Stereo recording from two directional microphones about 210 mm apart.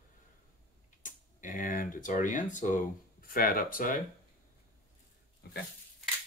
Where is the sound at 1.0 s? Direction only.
40° left (ahead or behind).